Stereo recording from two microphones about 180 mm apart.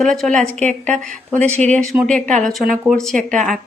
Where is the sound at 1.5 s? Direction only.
40° right (ahead or behind).